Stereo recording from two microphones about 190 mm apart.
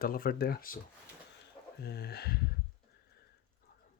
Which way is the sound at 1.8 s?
55° left (ahead or behind).